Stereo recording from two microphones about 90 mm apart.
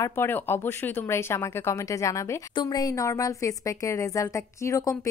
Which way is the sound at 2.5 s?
50° left (ahead or behind).